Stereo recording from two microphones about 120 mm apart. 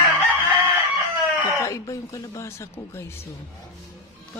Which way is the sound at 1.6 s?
25° left (ahead or behind).